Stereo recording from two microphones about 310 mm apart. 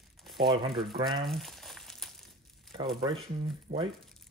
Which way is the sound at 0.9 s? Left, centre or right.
Centre.